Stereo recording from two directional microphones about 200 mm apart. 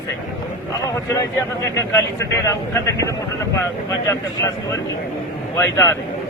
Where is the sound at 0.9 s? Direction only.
15° left (ahead or behind).